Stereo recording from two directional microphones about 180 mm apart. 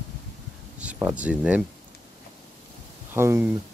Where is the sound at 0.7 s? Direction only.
5° right (ahead or behind).